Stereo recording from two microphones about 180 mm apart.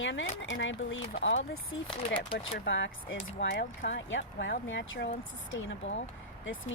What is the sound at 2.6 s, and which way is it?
Speech, 90° left.